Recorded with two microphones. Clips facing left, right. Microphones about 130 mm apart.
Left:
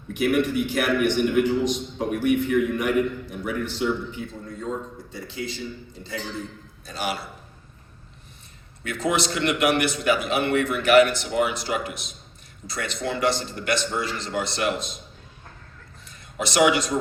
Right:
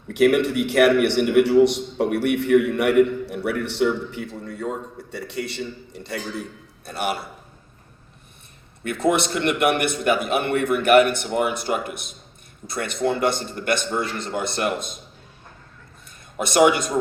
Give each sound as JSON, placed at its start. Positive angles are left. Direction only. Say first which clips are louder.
{"t": 0.1, "sound": "a man's voice", "louder": "right 4 dB", "side_deg": -70}
{"t": 6.8, "sound": "a man's voice", "louder": "right 3 dB", "side_deg": -60}
{"t": 8.8, "sound": "a man's voice", "louder": "right 4 dB", "side_deg": -55}
{"t": 16.4, "sound": "a man's voice", "louder": "right 3 dB", "side_deg": -50}